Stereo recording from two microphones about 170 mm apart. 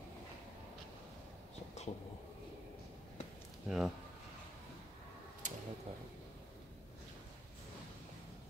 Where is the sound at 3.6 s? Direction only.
Centre (ahead or behind).